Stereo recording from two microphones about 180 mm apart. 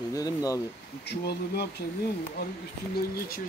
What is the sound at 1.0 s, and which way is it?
Speech, 65° left (ahead or behind).